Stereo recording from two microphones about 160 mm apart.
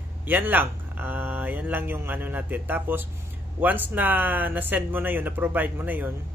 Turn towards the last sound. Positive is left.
turn(degrees=-10)  # may be behind; listen again after turning